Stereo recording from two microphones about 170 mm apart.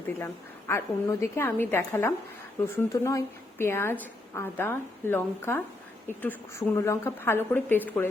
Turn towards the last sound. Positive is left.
turn(degrees=15)  # may be behind; listen again after turning